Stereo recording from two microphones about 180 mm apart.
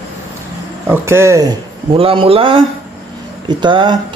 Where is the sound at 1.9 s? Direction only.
30° right (ahead or behind).